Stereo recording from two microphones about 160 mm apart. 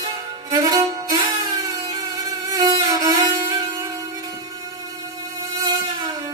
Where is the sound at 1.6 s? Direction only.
25° right (ahead or behind).